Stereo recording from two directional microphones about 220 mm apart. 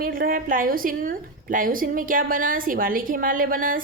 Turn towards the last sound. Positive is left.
turn(degrees=-40)  # may be behind; listen again after turning